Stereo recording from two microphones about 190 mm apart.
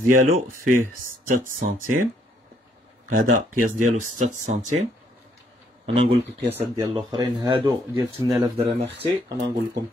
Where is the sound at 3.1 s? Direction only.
45° right (ahead or behind).